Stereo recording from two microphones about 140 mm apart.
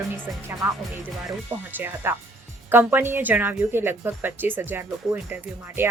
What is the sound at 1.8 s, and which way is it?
Speech, 15° right (ahead or behind).